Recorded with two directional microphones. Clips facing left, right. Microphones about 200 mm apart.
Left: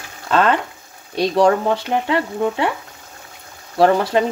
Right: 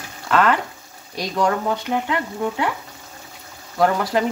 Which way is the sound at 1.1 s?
30° left (ahead or behind).